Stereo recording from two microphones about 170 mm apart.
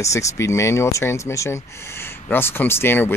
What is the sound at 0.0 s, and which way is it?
Speech, 15° left (ahead or behind).